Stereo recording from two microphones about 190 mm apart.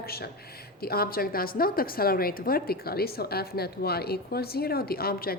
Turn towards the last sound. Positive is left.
turn(degrees=50)  # may be behind; listen again after turning